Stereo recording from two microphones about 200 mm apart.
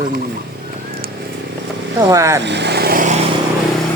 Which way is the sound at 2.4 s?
60° right (ahead or behind).